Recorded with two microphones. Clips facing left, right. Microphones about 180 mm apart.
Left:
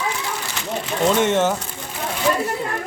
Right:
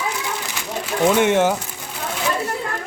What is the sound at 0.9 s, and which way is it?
Speech, 10° right (ahead or behind).